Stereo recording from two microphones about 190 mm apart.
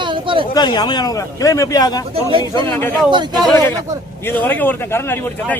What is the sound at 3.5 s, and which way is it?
A man's voice, 10° left (ahead or behind).